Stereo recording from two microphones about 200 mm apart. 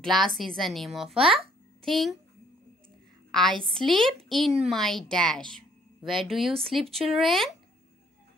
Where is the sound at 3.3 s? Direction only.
Centre (ahead or behind).